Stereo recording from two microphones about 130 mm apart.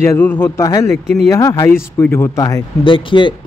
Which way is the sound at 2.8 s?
40° left (ahead or behind).